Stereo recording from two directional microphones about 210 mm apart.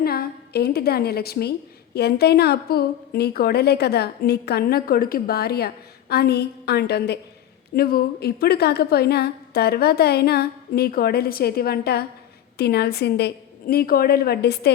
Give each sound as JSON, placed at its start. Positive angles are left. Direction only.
{"t": 0.0, "sound": "a woman's voice", "side_deg": 45}